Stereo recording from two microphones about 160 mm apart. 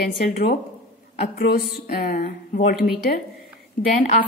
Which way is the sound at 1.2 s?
75° left (ahead or behind).